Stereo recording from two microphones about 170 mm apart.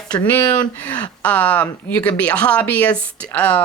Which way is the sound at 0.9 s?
5° left (ahead or behind).